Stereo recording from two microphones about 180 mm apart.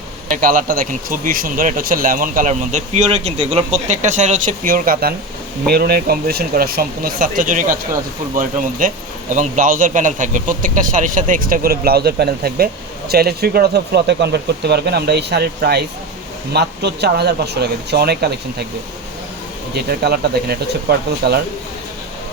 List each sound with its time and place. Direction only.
0.3 s a man's voice: 50° right (ahead or behind)
19.7 s a man's voice: 65° right (ahead or behind)